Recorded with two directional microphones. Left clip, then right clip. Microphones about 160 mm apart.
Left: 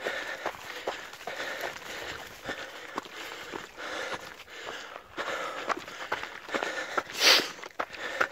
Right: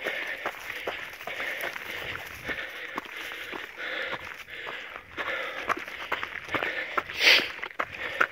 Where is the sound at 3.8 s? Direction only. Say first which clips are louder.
Right 3 dB; 30° left (ahead or behind).